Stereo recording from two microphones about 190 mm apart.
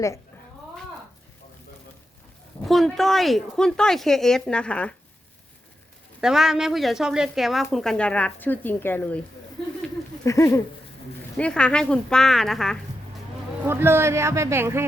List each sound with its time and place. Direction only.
2.6 s speech: centre (ahead or behind)
6.1 s speech: 5° right (ahead or behind)
10.2 s a sound: 15° left (ahead or behind)
11.3 s speech: 5° left (ahead or behind)
13.7 s speech: 10° right (ahead or behind)